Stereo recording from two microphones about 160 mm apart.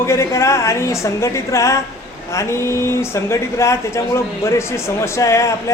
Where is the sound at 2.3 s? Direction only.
20° left (ahead or behind).